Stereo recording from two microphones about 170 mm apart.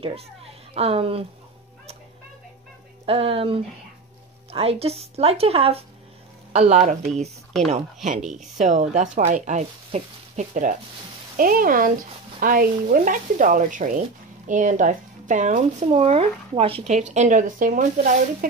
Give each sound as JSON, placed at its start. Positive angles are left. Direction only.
{"t": 0.7, "sound": "speech", "side_deg": -35}
{"t": 3.1, "sound": "speech", "side_deg": -35}
{"t": 8.2, "sound": "speech", "side_deg": -5}
{"t": 8.5, "sound": "speech", "side_deg": -45}